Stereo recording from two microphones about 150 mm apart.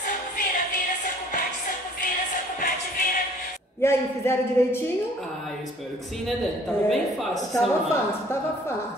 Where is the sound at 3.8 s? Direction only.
15° left (ahead or behind).